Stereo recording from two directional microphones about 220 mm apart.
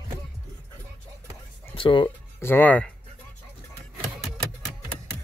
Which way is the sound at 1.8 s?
20° left (ahead or behind).